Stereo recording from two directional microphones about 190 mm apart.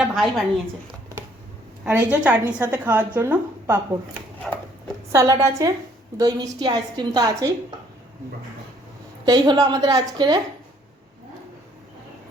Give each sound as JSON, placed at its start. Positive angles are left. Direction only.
{"t": 0.0, "sound": "a woman's voice", "side_deg": -5}
{"t": 1.8, "sound": "a woman's voice", "side_deg": -10}
{"t": 4.5, "sound": "a sound", "side_deg": 0}
{"t": 5.1, "sound": "a woman's voice", "side_deg": -15}
{"t": 9.2, "sound": "a woman's voice", "side_deg": -20}